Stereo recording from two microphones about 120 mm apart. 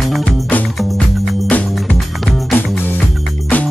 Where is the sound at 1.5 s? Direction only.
10° left (ahead or behind).